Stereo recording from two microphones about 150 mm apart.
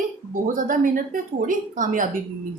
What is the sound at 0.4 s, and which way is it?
A woman's voice, 65° right (ahead or behind).